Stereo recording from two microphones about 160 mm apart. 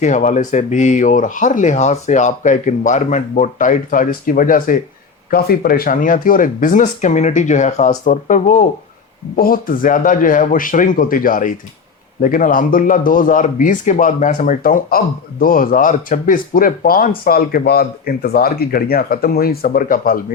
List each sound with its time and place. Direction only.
0.0 s speech: 50° left (ahead or behind)
5.3 s speech: 70° left (ahead or behind)